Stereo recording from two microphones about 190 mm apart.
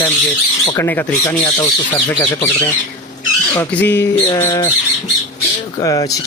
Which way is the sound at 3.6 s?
10° left (ahead or behind).